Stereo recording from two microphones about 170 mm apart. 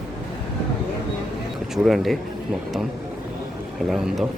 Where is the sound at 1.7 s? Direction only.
Centre (ahead or behind).